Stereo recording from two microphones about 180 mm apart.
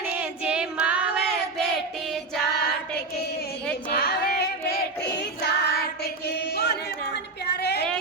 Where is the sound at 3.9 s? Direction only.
60° left (ahead or behind).